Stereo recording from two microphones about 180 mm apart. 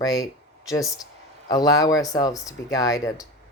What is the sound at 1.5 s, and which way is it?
Speech, 20° left (ahead or behind).